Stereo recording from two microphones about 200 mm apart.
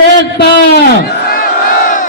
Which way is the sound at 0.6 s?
50° left (ahead or behind).